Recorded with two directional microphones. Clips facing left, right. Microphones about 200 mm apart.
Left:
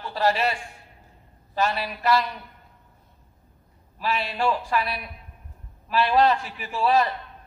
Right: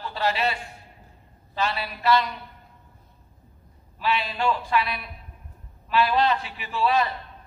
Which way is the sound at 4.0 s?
40° left (ahead or behind).